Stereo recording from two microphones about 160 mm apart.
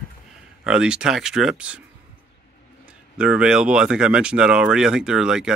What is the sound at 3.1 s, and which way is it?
Speech, 5° right (ahead or behind).